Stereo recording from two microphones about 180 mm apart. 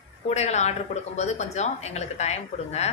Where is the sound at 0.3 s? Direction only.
40° left (ahead or behind).